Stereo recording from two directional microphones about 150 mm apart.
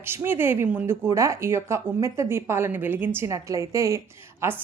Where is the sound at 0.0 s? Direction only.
15° right (ahead or behind).